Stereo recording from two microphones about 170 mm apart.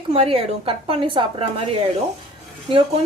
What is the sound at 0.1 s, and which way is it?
A woman's voice, 35° right (ahead or behind).